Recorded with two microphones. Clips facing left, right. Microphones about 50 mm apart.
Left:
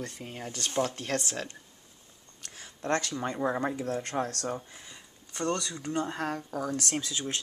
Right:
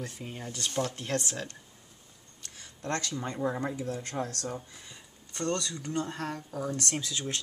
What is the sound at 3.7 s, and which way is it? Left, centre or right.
Speech, left.